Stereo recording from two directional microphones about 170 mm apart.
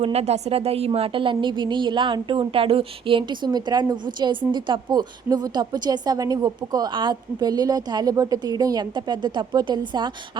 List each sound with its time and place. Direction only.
0.0 s a woman's voice: 40° right (ahead or behind)